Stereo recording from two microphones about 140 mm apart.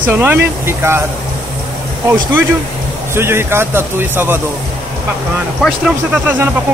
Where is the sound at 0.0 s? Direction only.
15° right (ahead or behind).